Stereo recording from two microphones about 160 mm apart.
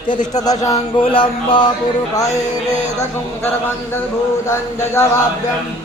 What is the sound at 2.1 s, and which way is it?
Speech, 20° left (ahead or behind).